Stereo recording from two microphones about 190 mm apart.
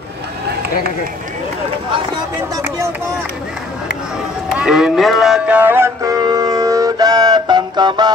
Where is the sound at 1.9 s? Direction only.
20° right (ahead or behind).